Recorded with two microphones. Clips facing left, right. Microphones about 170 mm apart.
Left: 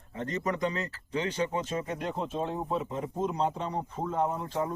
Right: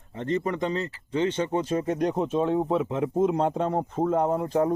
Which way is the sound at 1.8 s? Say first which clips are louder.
Right 9 dB; 40° right (ahead or behind).